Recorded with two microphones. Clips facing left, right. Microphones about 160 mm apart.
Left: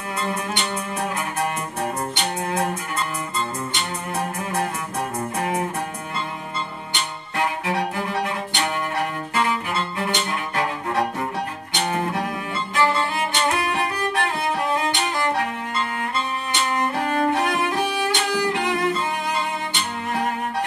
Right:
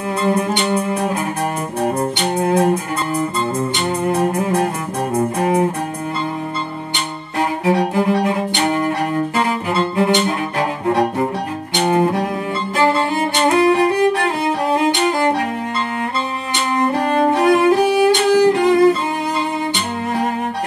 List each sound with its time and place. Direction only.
0.2 s music: 30° right (ahead or behind)
7.3 s music: 35° right (ahead or behind)
10.2 s bowed string instrument: 35° right (ahead or behind)
11.8 s music: 30° right (ahead or behind)
16.7 s music: 35° right (ahead or behind)